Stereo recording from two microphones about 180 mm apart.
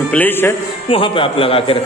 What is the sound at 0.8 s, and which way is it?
Speech, 30° left (ahead or behind).